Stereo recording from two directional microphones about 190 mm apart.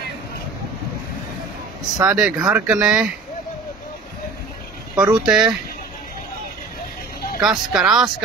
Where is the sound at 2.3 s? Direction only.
20° right (ahead or behind).